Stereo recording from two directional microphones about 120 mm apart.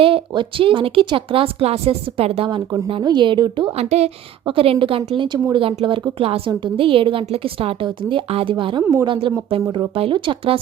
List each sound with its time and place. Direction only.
0.0 s a woman's voice: 45° right (ahead or behind)
2.9 s a woman's voice: 40° right (ahead or behind)
3.7 s a woman's voice: 60° right (ahead or behind)